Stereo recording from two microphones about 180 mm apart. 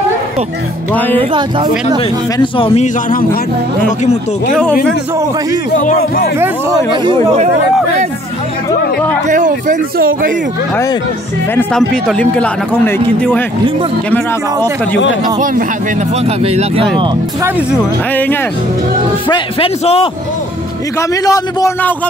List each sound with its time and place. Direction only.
1.1 s speech: 25° right (ahead or behind)
2.0 s speech: 30° left (ahead or behind)
5.9 s speech: 55° left (ahead or behind)
6.9 s speech: 25° right (ahead or behind)
9.3 s speech: 45° right (ahead or behind)
11.5 s speech: 5° left (ahead or behind)
15.2 s speech: 45° right (ahead or behind)
16.3 s speech: 35° right (ahead or behind)
17.4 s speech: 10° right (ahead or behind)
18.1 s speech: 10° left (ahead or behind)
19.2 s a man's voice: 30° left (ahead or behind)
21.1 s speech: 20° left (ahead or behind)